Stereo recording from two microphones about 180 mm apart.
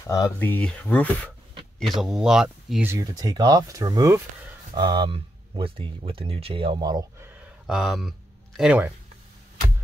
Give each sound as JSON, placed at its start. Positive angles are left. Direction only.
{"t": 0.0, "sound": "speech", "side_deg": 20}
{"t": 3.0, "sound": "speech", "side_deg": -20}